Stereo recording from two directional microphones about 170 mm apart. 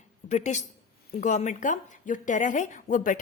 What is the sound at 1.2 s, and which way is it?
Speech, 45° left (ahead or behind).